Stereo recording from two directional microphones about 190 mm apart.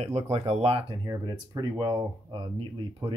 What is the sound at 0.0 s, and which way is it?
Speech, 35° right (ahead or behind).